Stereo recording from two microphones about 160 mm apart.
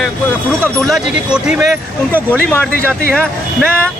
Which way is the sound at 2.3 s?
10° left (ahead or behind).